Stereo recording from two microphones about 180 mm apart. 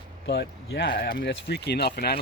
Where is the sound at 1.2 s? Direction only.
65° left (ahead or behind).